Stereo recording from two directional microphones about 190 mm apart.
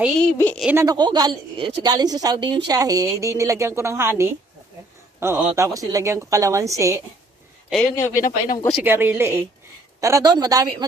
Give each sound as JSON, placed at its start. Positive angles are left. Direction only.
{"t": 0.2, "sound": "speech", "side_deg": 10}
{"t": 0.6, "sound": "a woman's voice", "side_deg": -10}
{"t": 0.8, "sound": "a woman's voice", "side_deg": -20}
{"t": 7.7, "sound": "speech", "side_deg": 10}
{"t": 8.1, "sound": "speech", "side_deg": 45}
{"t": 8.7, "sound": "a woman's voice", "side_deg": -10}